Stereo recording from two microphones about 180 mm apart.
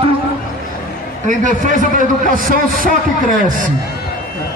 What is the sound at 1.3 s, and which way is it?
A man's voice, 45° right (ahead or behind).